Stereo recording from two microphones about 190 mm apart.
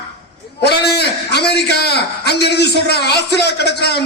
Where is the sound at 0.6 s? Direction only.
60° left (ahead or behind).